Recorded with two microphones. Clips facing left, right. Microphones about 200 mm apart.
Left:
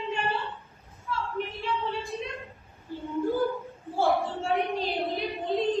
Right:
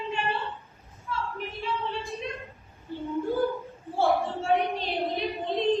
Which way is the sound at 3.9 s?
Centre (ahead or behind).